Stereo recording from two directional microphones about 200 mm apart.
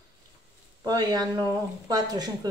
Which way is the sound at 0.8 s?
20° right (ahead or behind).